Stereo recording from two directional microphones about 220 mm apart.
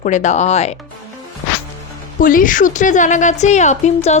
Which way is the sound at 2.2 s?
40° left (ahead or behind).